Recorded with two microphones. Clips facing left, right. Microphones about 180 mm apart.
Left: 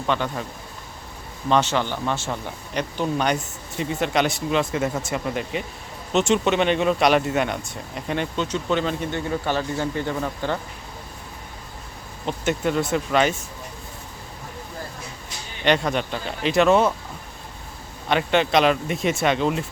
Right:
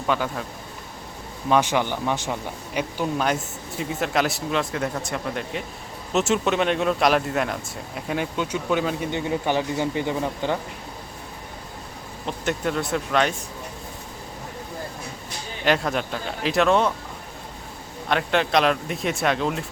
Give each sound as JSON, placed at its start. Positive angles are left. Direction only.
{"t": 0.1, "sound": "speech", "side_deg": -5}
{"t": 1.5, "sound": "speech", "side_deg": -10}
{"t": 12.2, "sound": "speech", "side_deg": 0}
{"t": 15.6, "sound": "speech", "side_deg": 0}
{"t": 18.1, "sound": "speech", "side_deg": 0}